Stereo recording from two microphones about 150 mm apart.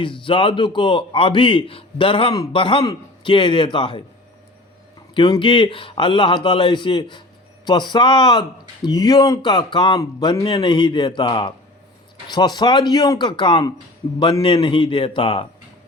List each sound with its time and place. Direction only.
0.0 s a man's voice: 35° left (ahead or behind)
2.3 s speech: 25° left (ahead or behind)
2.6 s a man's voice: 35° left (ahead or behind)
5.1 s a man's voice: 30° left (ahead or behind)